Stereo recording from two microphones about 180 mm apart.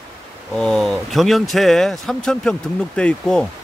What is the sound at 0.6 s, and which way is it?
Speech, centre (ahead or behind).